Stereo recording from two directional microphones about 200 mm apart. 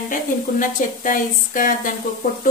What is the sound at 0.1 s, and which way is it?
A woman's voice, 45° left (ahead or behind).